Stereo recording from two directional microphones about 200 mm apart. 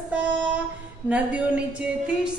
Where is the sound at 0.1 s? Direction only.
5° right (ahead or behind).